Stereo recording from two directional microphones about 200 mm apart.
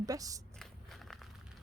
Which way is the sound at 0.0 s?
15° right (ahead or behind).